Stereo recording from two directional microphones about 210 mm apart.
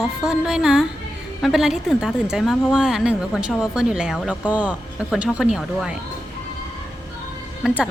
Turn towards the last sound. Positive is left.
turn(degrees=-5)  # may be behind; listen again after turning